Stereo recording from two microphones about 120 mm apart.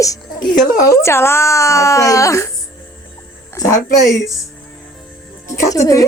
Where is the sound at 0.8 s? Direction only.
25° left (ahead or behind).